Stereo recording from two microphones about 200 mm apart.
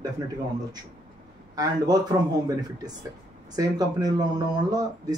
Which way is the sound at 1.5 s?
20° right (ahead or behind).